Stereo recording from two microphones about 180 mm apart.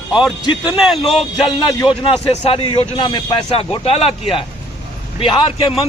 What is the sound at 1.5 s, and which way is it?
A man's voice, 30° left (ahead or behind).